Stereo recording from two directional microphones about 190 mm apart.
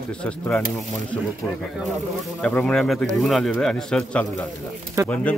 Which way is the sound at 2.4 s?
5° left (ahead or behind).